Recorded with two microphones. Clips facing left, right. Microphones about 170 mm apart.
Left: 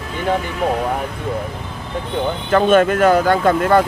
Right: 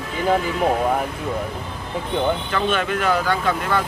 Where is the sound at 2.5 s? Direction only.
45° left (ahead or behind).